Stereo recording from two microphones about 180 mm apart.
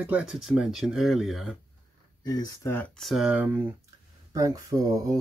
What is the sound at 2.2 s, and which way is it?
Speech, 20° left (ahead or behind).